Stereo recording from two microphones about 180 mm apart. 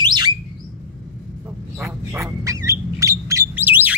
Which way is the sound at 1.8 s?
15° right (ahead or behind).